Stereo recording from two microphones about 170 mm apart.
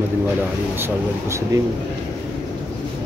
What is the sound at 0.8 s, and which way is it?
Speech, 15° right (ahead or behind).